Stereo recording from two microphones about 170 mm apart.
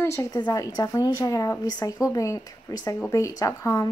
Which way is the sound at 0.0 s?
15° left (ahead or behind).